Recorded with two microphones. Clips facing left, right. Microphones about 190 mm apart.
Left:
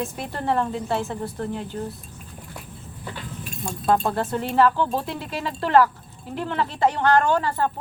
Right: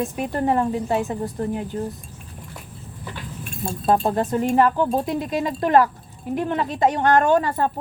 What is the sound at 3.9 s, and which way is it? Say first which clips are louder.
A woman's voice: right 2 dB; 20° right (ahead or behind).